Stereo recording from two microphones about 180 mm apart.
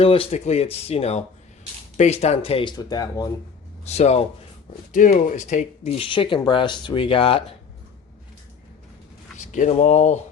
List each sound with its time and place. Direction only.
0.0 s speech: 30° left (ahead or behind)
3.8 s speech: 35° left (ahead or behind)
9.4 s speech: 40° left (ahead or behind)